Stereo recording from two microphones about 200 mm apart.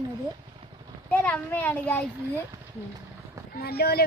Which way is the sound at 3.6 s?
50° left (ahead or behind).